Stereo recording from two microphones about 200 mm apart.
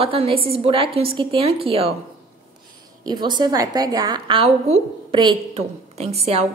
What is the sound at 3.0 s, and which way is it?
A woman's voice, 20° right (ahead or behind).